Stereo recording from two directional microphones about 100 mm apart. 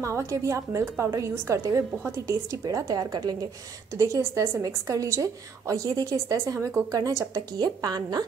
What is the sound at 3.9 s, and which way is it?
A woman's voice, 25° right (ahead or behind).